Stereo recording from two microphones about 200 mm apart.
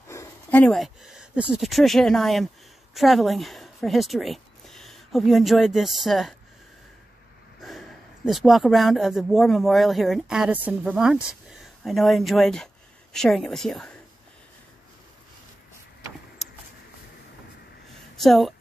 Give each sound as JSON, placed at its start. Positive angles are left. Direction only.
{"t": 0.1, "sound": "speech", "side_deg": 10}
{"t": 8.3, "sound": "speech", "side_deg": 0}
{"t": 18.2, "sound": "speech", "side_deg": 0}